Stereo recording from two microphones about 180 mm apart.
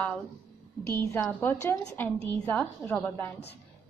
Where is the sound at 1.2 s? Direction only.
10° left (ahead or behind).